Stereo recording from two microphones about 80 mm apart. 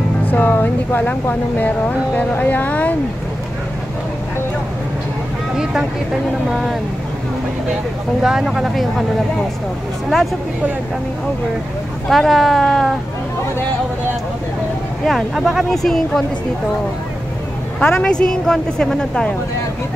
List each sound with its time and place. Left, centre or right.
0.3 s speech: left
5.6 s speech: centre
8.2 s speech: centre
12.1 s speech: centre
15.0 s speech: centre
17.7 s speech: centre